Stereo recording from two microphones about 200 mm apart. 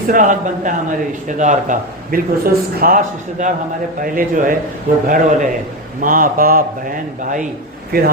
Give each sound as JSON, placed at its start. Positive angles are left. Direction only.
{"t": 0.1, "sound": "speech", "side_deg": -40}